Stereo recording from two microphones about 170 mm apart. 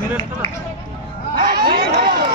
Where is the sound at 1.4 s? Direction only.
65° right (ahead or behind).